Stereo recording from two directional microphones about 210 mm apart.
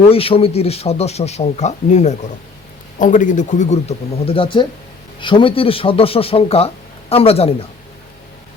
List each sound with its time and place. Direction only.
0.1 s speech: 25° left (ahead or behind)